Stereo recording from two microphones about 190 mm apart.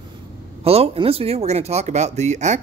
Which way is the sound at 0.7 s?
30° right (ahead or behind).